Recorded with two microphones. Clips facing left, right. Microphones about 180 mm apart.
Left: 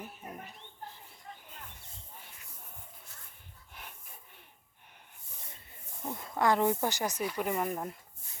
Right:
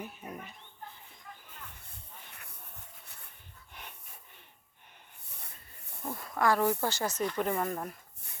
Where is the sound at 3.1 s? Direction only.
65° right (ahead or behind).